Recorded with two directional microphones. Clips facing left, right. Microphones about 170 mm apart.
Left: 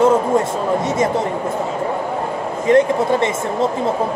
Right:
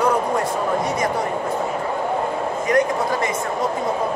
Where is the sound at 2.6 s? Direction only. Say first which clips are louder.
Left 6 dB; 25° left (ahead or behind).